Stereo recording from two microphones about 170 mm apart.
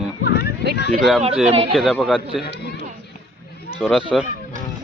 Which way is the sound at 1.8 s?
Centre (ahead or behind).